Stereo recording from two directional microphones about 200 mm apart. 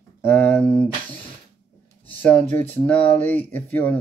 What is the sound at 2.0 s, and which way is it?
Speech, 10° left (ahead or behind).